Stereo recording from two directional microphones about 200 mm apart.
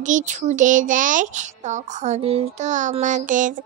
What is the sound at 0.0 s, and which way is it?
Speech, 40° right (ahead or behind).